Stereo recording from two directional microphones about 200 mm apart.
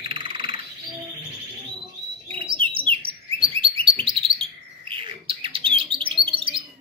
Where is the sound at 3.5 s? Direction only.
25° right (ahead or behind).